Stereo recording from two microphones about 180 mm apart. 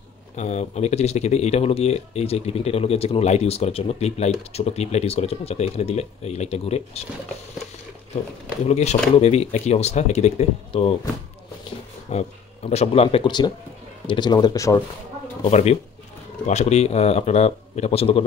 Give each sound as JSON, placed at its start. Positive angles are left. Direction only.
{"t": 0.4, "sound": "speech", "side_deg": 35}
{"t": 8.6, "sound": "speech", "side_deg": 35}
{"t": 12.1, "sound": "speech", "side_deg": 35}
{"t": 15.5, "sound": "speech", "side_deg": 35}